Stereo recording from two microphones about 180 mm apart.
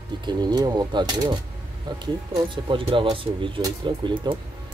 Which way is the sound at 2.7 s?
30° right (ahead or behind).